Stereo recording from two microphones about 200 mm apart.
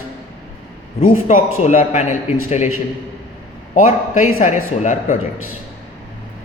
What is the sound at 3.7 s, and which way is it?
A woman's voice, 40° left (ahead or behind).